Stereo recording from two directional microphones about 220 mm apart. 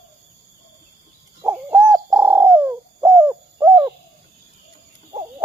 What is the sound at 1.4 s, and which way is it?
Bird, 10° right (ahead or behind).